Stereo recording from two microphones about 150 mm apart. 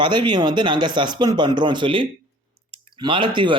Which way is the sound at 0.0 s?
30° right (ahead or behind).